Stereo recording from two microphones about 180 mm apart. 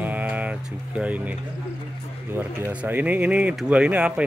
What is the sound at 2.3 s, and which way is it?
Speech, 10° right (ahead or behind).